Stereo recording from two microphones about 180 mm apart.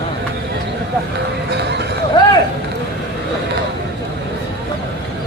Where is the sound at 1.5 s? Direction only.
70° right (ahead or behind).